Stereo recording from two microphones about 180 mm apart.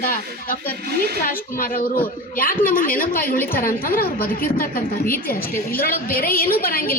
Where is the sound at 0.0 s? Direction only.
50° left (ahead or behind).